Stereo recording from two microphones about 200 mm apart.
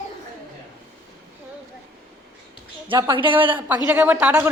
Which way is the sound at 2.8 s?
25° right (ahead or behind).